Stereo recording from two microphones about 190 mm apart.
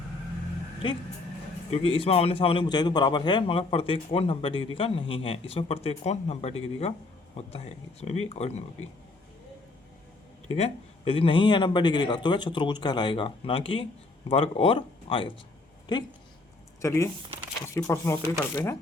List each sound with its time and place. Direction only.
1.7 s a man's voice: 30° left (ahead or behind)
10.5 s a man's voice: 30° left (ahead or behind); by 18.8 s 10° left (ahead or behind)